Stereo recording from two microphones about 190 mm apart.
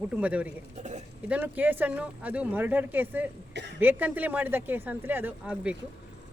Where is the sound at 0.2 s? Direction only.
5° right (ahead or behind).